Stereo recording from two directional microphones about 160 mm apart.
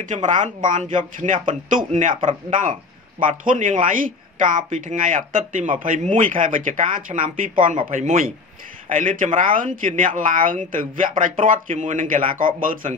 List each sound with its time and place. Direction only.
0.1 s speech: 50° right (ahead or behind)